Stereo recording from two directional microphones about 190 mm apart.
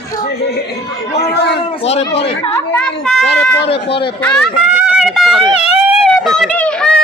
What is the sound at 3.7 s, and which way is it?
Speech, 30° left (ahead or behind).